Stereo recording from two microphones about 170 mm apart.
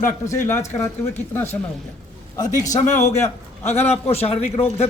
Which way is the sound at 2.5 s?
20° left (ahead or behind).